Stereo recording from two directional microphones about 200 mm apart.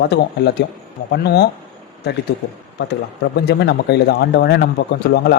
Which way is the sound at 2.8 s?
55° left (ahead or behind).